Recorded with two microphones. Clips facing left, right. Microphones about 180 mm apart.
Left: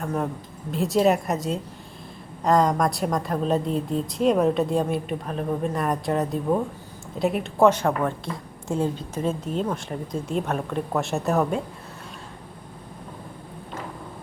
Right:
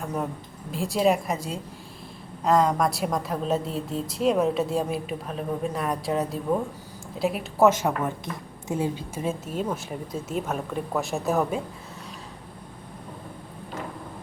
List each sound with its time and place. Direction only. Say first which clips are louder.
0.0 s a woman's voice: left 3 dB; centre (ahead or behind)
2.4 s a woman's voice: left 1 dB; centre (ahead or behind)
8.0 s a woman's voice: left 3 dB; 20° right (ahead or behind)
8.7 s a woman's voice: left 2 dB; 10° right (ahead or behind)